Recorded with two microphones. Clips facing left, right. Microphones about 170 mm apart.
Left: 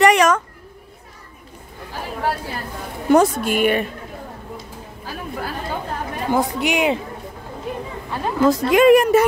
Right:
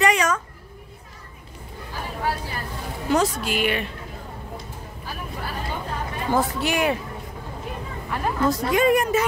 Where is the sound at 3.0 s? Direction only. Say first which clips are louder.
Left 7 dB; 55° left (ahead or behind).